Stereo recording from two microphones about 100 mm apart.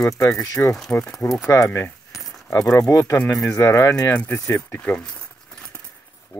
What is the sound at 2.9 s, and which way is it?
Speech, 30° left (ahead or behind).